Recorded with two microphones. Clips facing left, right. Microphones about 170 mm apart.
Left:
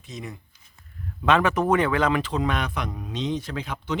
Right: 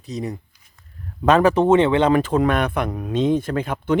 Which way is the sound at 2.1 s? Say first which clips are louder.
Right 7 dB; 50° right (ahead or behind).